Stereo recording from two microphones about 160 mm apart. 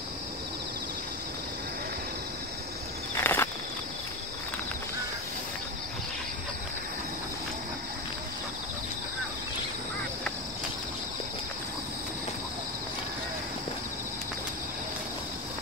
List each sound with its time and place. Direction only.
3.2 s cricket: 15° left (ahead or behind)